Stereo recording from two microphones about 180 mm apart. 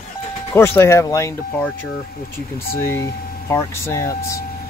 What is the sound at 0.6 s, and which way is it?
Speech, 15° left (ahead or behind).